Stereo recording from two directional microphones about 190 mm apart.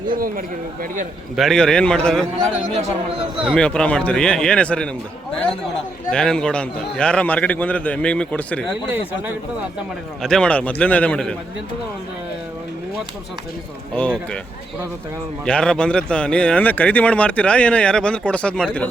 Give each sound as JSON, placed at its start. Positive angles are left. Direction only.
{"t": 0.2, "sound": "speech", "side_deg": -50}
{"t": 1.4, "sound": "a man's voice", "side_deg": 0}
{"t": 3.3, "sound": "a man's voice", "side_deg": -5}
{"t": 3.6, "sound": "a man's voice", "side_deg": 5}
{"t": 10.2, "sound": "a man's voice", "side_deg": 5}
{"t": 15.4, "sound": "a man's voice", "side_deg": 5}